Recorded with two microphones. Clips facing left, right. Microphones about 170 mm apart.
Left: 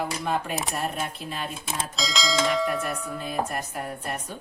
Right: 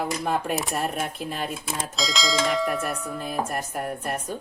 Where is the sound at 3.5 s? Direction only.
45° right (ahead or behind).